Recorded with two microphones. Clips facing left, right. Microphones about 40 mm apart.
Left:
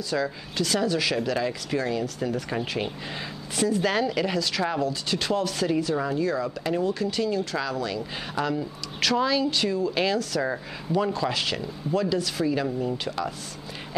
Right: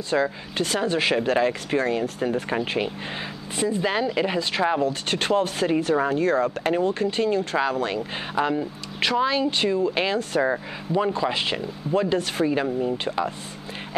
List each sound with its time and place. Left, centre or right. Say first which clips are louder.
0.1 s speech: right 5 dB; right
5.0 s speech: right 4 dB; right
8.4 s speech: right 4 dB; right
10.4 s speech: right 5 dB; centre